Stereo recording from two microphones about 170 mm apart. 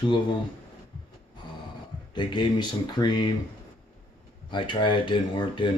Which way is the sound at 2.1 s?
25° left (ahead or behind).